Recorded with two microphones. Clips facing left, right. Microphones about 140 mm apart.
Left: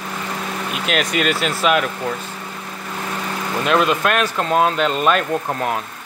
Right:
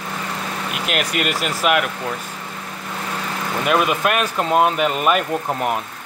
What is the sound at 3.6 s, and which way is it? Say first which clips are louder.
Speech: left 1 dB; 10° right (ahead or behind).